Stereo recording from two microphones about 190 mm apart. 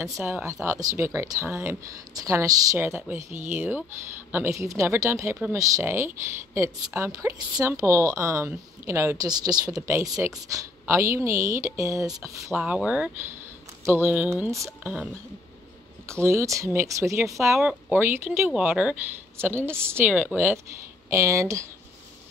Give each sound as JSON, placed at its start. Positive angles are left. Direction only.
{"t": 0.0, "sound": "speech", "side_deg": -15}
{"t": 3.3, "sound": "speech", "side_deg": -40}
{"t": 3.5, "sound": "speech", "side_deg": -10}
{"t": 16.1, "sound": "speech", "side_deg": -15}